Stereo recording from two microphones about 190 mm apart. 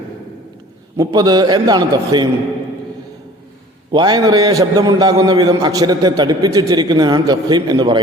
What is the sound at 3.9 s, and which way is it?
A man's voice, 20° right (ahead or behind).